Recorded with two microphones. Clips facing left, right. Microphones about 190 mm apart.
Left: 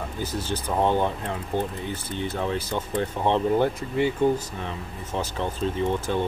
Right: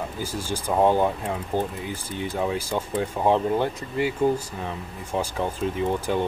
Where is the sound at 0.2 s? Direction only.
10° right (ahead or behind).